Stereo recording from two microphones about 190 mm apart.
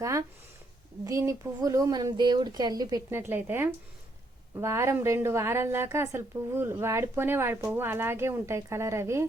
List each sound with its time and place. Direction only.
0.0 s a woman's voice: 15° right (ahead or behind)